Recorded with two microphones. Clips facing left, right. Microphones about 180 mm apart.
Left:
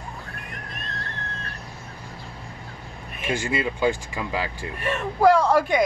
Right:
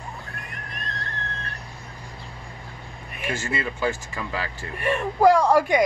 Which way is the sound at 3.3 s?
15° left (ahead or behind).